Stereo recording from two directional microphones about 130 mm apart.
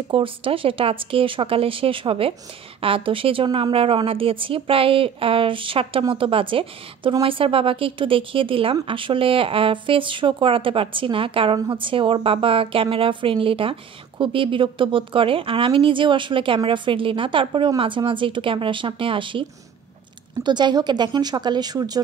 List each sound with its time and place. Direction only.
0.1 s a woman's voice: 45° right (ahead or behind)
20.4 s a woman's voice: 35° right (ahead or behind)